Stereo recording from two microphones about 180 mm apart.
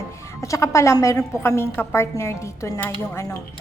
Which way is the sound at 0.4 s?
15° left (ahead or behind).